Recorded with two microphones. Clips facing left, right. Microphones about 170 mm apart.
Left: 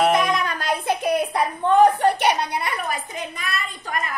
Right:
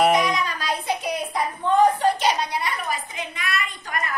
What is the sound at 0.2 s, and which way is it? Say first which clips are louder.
Music: left 2 dB; 55° left (ahead or behind).